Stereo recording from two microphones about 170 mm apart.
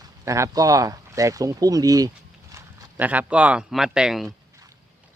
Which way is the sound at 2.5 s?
10° right (ahead or behind).